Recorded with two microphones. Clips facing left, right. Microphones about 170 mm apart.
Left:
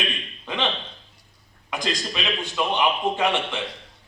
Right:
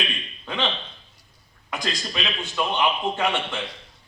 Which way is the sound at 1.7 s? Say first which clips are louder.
Left 2 dB; 10° left (ahead or behind).